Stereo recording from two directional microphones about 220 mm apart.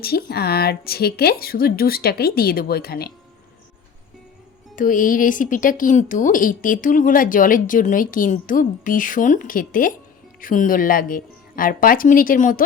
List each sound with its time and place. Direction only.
0.0 s a woman's voice: 45° left (ahead or behind)
4.7 s speech: 35° left (ahead or behind)